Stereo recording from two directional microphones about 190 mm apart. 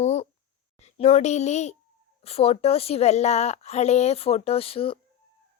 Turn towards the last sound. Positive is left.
turn(degrees=30)  # may be behind; listen again after turning